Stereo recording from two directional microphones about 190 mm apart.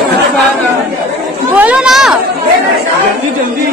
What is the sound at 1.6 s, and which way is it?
Speech, 5° right (ahead or behind).